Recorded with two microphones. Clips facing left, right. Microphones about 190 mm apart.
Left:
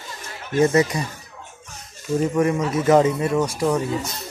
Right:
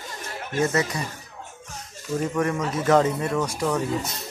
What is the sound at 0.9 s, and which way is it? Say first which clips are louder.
Speech: left 4 dB; 15° left (ahead or behind).